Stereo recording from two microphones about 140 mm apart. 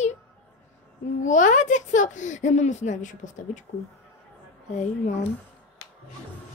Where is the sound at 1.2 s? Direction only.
60° left (ahead or behind).